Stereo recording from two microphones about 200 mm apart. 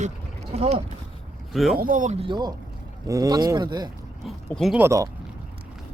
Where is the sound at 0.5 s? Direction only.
30° right (ahead or behind).